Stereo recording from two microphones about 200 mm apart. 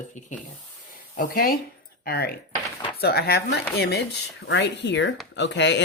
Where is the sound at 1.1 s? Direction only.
45° left (ahead or behind).